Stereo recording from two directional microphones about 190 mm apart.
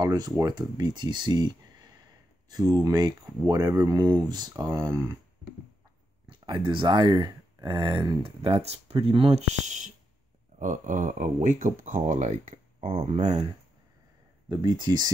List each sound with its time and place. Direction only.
0.0 s speech: 20° right (ahead or behind)
2.5 s speech: 20° right (ahead or behind)
6.2 s speech: 25° right (ahead or behind)
14.5 s speech: 25° right (ahead or behind)